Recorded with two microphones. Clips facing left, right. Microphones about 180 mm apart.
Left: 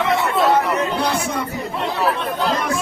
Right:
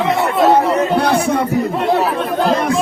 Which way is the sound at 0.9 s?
60° right (ahead or behind).